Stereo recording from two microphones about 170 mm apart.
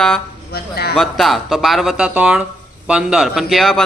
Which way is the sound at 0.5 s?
65° left (ahead or behind).